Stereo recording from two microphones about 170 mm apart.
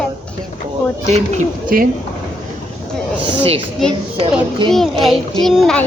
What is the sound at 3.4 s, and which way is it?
Speech, 35° right (ahead or behind).